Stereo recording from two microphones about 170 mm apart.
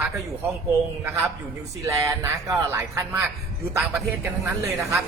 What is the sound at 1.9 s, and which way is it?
A man's voice, 15° right (ahead or behind).